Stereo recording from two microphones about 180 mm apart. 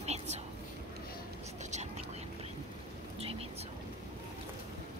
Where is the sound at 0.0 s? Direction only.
40° right (ahead or behind).